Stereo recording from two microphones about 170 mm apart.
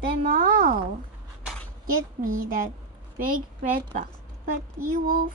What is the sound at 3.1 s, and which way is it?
A woman's voice, 55° right (ahead or behind).